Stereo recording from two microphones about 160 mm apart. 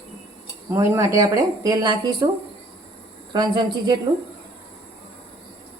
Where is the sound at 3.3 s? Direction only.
25° right (ahead or behind).